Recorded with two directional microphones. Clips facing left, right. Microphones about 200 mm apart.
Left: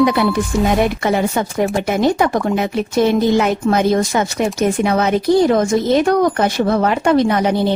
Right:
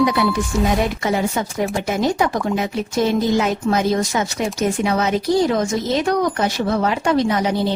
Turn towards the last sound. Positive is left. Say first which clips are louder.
# left 3 dB
turn(degrees=55)  # may be behind; listen again after turning